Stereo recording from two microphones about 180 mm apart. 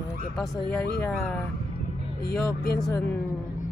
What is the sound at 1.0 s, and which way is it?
Speech, 10° left (ahead or behind).